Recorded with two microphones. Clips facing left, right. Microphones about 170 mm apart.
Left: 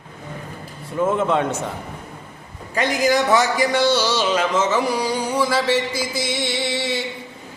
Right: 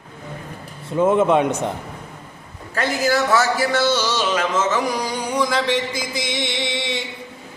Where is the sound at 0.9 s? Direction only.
20° right (ahead or behind).